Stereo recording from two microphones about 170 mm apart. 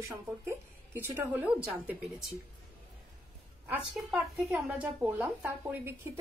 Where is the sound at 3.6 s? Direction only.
10° right (ahead or behind).